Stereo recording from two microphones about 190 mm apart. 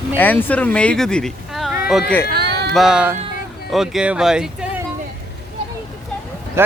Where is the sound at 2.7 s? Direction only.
5° right (ahead or behind).